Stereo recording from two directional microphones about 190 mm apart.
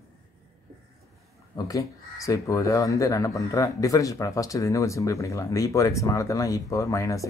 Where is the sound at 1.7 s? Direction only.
15° left (ahead or behind).